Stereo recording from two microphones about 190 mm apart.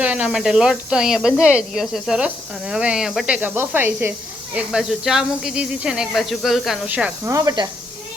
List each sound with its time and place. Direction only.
0.0 s speech: 5° right (ahead or behind)
7.3 s speech: 20° right (ahead or behind)